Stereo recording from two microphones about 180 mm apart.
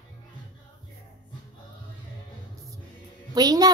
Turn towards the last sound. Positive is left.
turn(degrees=-20)  # may be behind; listen again after turning